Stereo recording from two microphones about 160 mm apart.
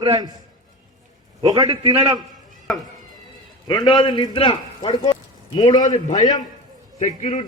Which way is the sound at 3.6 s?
30° left (ahead or behind).